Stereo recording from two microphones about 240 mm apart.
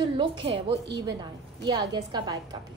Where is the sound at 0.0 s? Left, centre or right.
Right.